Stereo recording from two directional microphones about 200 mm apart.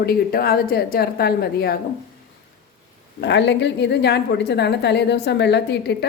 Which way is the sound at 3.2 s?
60° left (ahead or behind).